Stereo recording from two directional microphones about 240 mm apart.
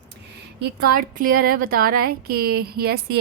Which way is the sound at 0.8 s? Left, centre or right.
Right.